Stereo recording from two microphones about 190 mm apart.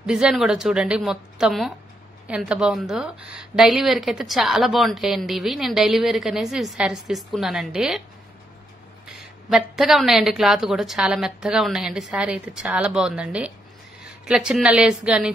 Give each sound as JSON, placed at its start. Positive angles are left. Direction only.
{"t": 0.0, "sound": "a woman's voice", "side_deg": -5}
{"t": 9.0, "sound": "a woman's voice", "side_deg": 0}